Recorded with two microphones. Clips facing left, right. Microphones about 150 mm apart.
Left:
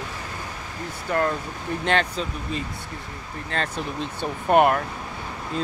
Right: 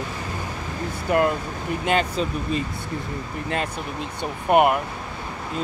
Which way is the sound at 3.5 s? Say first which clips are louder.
Left 1 dB; 10° right (ahead or behind).